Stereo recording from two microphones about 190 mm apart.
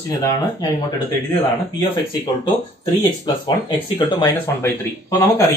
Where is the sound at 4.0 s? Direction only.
20° left (ahead or behind).